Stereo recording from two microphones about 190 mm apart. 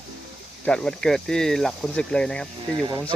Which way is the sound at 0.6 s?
5° left (ahead or behind).